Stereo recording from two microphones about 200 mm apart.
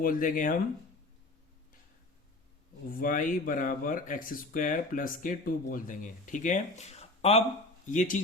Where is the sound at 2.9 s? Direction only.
45° left (ahead or behind).